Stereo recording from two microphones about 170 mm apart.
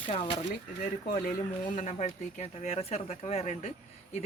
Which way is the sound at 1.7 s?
45° left (ahead or behind).